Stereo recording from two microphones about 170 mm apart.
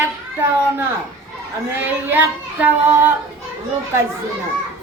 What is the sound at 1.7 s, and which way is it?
Speech, 10° right (ahead or behind).